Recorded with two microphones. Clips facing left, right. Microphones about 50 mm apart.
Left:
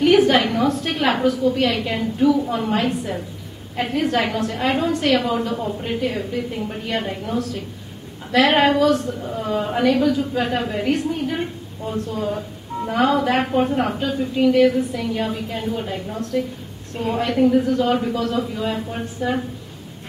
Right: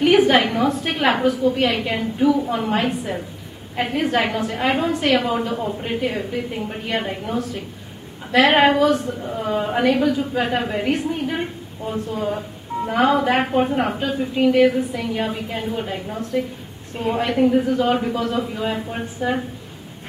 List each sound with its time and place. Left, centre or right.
0.0 s speech: centre